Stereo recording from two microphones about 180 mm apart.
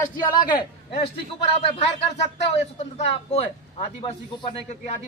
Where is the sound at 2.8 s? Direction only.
35° left (ahead or behind).